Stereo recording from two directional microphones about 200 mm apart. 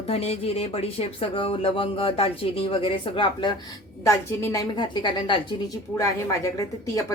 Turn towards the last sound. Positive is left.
turn(degrees=15)  # may be behind; listen again after turning